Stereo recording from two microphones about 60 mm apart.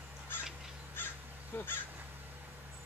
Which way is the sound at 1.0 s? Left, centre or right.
Left.